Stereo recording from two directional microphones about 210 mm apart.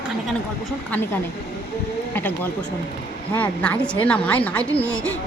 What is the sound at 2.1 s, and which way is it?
Speech, 10° left (ahead or behind).